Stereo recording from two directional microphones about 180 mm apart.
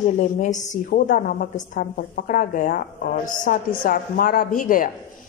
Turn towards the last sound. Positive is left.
turn(degrees=50)  # may be behind; listen again after turning